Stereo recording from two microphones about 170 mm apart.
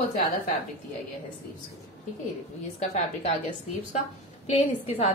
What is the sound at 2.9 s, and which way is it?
A woman's voice, 40° left (ahead or behind).